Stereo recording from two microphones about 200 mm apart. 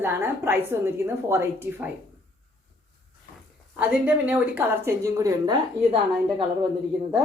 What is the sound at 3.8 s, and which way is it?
Speech, 5° right (ahead or behind).